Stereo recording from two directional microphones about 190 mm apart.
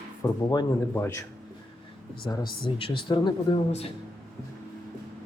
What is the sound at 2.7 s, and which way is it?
Speech, 25° left (ahead or behind).